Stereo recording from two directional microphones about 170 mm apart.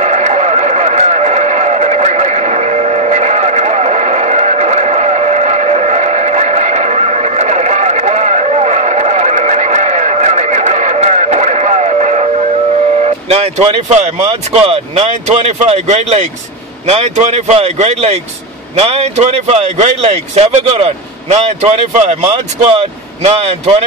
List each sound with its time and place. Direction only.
0.0 s a sound: 40° right (ahead or behind)
12.9 s vehicle: 40° right (ahead or behind)
14.5 s a man's voice: 40° right (ahead or behind)
23.2 s a man's voice: 40° right (ahead or behind)